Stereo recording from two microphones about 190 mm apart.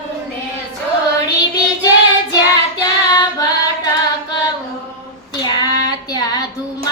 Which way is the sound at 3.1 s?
20° left (ahead or behind).